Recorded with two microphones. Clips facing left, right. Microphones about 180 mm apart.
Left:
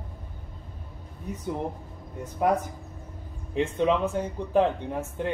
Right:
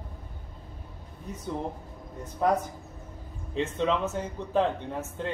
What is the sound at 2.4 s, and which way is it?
A man's voice, 15° left (ahead or behind).